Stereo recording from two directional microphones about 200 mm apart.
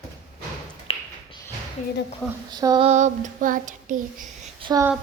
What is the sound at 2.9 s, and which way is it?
Child singing, 35° right (ahead or behind).